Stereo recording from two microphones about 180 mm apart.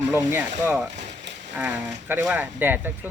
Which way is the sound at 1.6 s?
10° right (ahead or behind).